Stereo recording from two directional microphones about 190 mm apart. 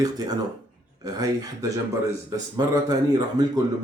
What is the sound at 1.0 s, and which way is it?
Speech, 20° right (ahead or behind).